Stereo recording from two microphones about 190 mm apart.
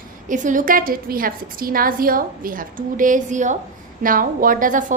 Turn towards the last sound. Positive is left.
turn(degrees=-45)  # may be behind; listen again after turning